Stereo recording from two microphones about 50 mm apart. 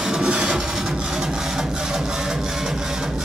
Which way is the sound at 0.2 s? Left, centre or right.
Centre.